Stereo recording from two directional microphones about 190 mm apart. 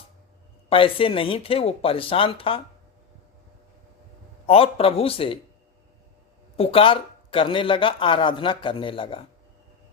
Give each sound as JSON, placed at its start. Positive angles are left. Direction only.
{"t": 0.7, "sound": "speech", "side_deg": 30}
{"t": 4.4, "sound": "speech", "side_deg": 30}
{"t": 6.6, "sound": "speech", "side_deg": 30}